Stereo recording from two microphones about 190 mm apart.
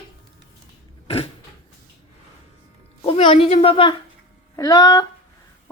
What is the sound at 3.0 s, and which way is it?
A woman's voice, 30° left (ahead or behind).